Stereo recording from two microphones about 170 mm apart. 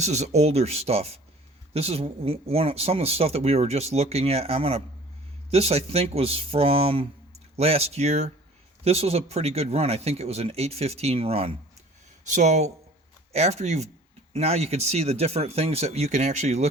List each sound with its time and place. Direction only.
0.0 s speech: 40° right (ahead or behind)